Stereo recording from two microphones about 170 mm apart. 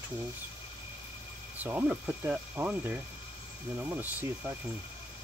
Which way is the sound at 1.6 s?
10° right (ahead or behind).